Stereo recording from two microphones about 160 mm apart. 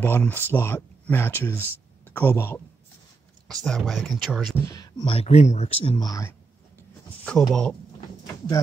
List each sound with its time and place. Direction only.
0.0 s speech: 10° left (ahead or behind)
3.4 s speech: 5° left (ahead or behind)
4.6 s speech: 25° left (ahead or behind); by 5.9 s 40° left (ahead or behind)
5.9 s speech: 20° left (ahead or behind)
7.2 s speech: 5° left (ahead or behind)